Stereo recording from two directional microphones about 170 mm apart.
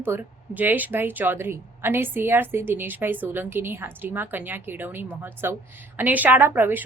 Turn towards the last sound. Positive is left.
turn(degrees=-10)  # may be behind; listen again after turning